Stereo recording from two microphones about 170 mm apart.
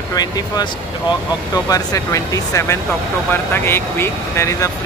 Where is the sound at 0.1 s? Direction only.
25° left (ahead or behind).